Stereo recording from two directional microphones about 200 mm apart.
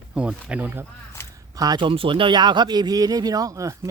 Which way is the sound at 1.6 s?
20° right (ahead or behind).